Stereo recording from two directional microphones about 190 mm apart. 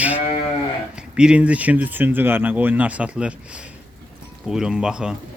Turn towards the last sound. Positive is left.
turn(degrees=-5)  # may be behind; listen again after turning